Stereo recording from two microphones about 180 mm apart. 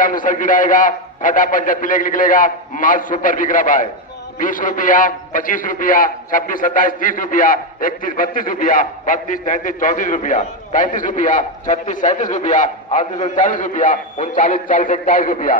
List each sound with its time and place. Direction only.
0.0 s a man's voice: 45° left (ahead or behind)